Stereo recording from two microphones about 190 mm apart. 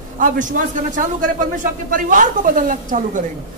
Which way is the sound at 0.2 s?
45° right (ahead or behind).